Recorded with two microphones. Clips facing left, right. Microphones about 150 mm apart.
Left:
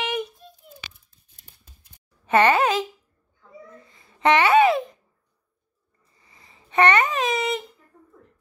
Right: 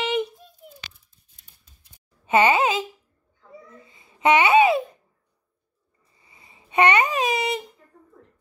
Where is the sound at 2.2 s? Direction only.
5° right (ahead or behind).